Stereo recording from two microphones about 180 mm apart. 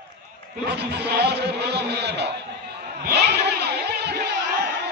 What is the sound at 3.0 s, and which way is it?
Vehicle, 65° right (ahead or behind).